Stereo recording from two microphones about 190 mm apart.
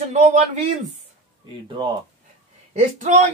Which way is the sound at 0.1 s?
35° right (ahead or behind).